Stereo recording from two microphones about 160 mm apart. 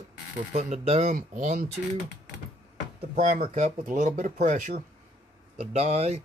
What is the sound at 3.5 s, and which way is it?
Speech, 50° right (ahead or behind).